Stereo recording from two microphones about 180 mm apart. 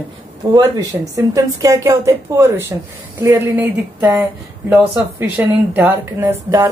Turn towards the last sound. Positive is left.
turn(degrees=-10)  # may be behind; listen again after turning